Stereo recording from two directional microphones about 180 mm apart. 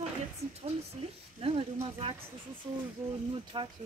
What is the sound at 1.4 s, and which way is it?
Speech, 30° right (ahead or behind).